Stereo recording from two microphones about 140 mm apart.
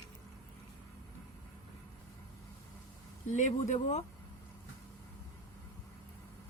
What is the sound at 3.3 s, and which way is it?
Speech, 60° left (ahead or behind).